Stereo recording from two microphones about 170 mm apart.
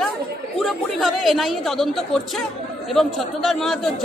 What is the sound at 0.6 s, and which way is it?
A man's voice, centre (ahead or behind).